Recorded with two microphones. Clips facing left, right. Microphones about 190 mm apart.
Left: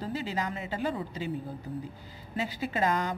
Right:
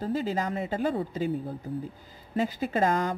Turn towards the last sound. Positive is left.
turn(degrees=-45)  # may be behind; listen again after turning